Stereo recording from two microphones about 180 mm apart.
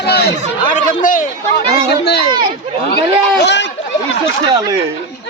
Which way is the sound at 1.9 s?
65° left (ahead or behind).